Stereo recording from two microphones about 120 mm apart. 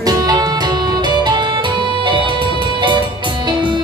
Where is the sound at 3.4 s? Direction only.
40° right (ahead or behind).